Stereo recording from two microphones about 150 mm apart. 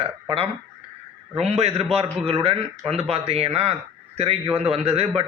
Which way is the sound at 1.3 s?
45° right (ahead or behind).